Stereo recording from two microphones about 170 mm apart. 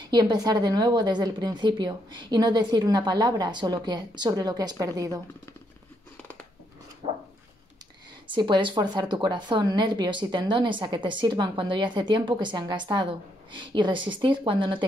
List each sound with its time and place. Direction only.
0.1 s a woman's voice: 25° right (ahead or behind)
8.4 s a woman's voice: 30° right (ahead or behind)